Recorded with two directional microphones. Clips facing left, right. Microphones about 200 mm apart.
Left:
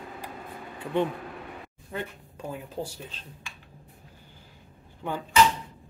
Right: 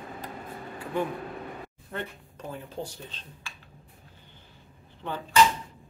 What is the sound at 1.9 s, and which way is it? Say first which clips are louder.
Speech: left 2 dB; 10° left (ahead or behind).